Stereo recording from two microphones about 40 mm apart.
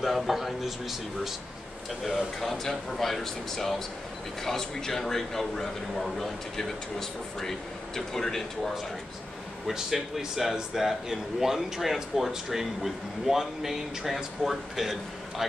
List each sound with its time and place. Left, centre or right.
0.0 s a man's voice: centre
9.7 s speech: centre